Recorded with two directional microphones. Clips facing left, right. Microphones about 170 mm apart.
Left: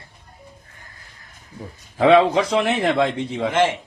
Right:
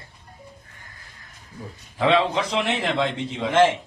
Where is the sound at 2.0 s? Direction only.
80° left.